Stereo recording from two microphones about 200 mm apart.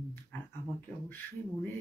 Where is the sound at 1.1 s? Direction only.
10° left (ahead or behind).